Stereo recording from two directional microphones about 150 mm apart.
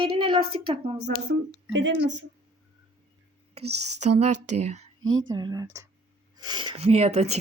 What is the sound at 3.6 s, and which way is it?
A woman's voice, 45° right (ahead or behind).